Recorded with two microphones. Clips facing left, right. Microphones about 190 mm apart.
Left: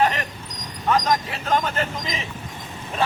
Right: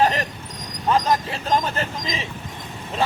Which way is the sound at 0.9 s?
30° right (ahead or behind).